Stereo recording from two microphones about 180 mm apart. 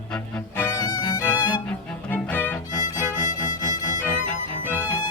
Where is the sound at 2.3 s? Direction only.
10° left (ahead or behind).